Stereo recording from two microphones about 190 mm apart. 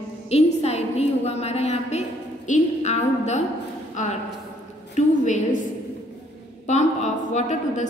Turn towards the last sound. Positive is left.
turn(degrees=40)  # may be behind; listen again after turning